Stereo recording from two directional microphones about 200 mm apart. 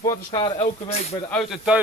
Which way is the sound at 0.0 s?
20° left (ahead or behind).